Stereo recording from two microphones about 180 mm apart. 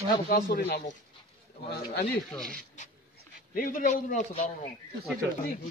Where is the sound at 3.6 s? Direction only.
45° left (ahead or behind).